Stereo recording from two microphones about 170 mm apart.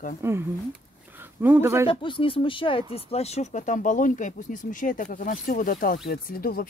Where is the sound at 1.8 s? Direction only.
30° left (ahead or behind).